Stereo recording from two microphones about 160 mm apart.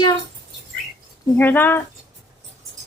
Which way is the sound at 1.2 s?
10° left (ahead or behind).